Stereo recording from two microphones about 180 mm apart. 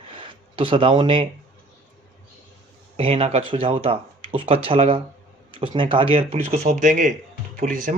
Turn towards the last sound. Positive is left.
turn(degrees=-50)  # may be behind; listen again after turning